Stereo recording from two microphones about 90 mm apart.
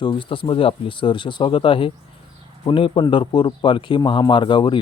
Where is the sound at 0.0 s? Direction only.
65° left (ahead or behind).